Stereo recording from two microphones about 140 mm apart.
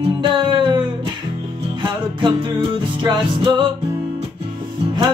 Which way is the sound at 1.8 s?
35° right (ahead or behind).